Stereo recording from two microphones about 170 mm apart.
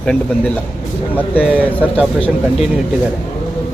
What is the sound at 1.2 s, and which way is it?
Speech, 10° left (ahead or behind).